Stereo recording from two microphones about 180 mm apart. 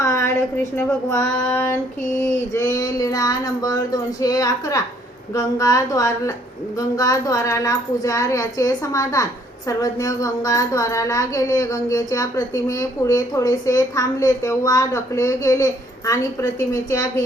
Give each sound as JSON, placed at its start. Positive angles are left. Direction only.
{"t": 0.0, "sound": "a woman's voice", "side_deg": 15}